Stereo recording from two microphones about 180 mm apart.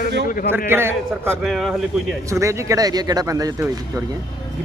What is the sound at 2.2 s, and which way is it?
Speech, 15° right (ahead or behind).